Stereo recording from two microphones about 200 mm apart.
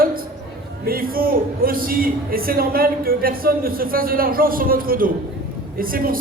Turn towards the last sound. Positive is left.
turn(degrees=-45)  # may be behind; listen again after turning